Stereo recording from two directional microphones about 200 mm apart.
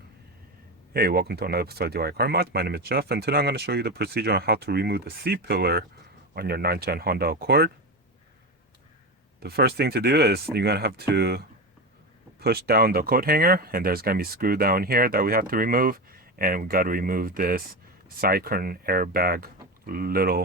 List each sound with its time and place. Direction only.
0.9 s speech: 50° right (ahead or behind)
9.4 s speech: 50° right (ahead or behind)